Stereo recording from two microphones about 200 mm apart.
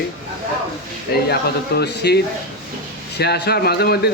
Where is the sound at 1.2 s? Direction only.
55° left (ahead or behind).